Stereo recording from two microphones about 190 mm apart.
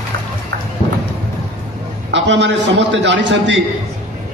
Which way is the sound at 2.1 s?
70° right (ahead or behind).